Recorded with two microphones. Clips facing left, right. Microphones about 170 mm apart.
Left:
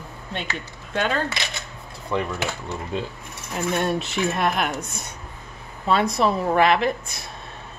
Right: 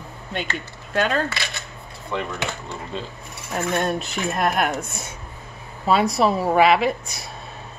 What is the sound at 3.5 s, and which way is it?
Speech, centre (ahead or behind).